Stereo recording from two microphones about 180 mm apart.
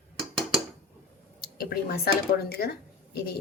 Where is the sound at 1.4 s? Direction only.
60° left (ahead or behind).